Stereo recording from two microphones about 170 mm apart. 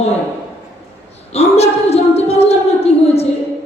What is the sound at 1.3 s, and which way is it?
A woman's voice, 40° left (ahead or behind).